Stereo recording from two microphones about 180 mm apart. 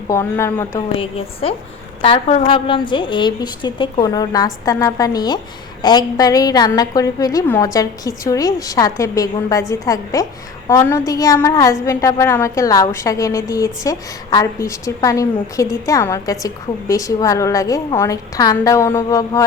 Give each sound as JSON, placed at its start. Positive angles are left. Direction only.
{"t": 0.1, "sound": "a woman's voice", "side_deg": 15}
{"t": 0.9, "sound": "a woman's voice", "side_deg": 30}